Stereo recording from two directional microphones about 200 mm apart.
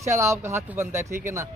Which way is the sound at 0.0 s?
15° right (ahead or behind).